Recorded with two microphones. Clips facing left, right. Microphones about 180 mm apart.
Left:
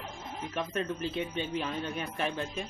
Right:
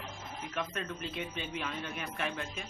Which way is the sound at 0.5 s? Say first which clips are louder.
Left 5 dB; 30° left (ahead or behind).